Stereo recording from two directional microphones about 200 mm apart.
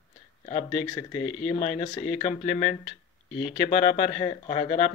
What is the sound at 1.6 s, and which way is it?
Speech, 35° left (ahead or behind).